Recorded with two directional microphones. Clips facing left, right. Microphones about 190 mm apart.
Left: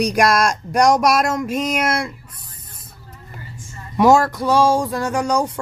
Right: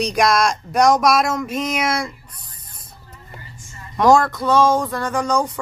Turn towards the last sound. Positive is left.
turn(degrees=10)  # may be behind; listen again after turning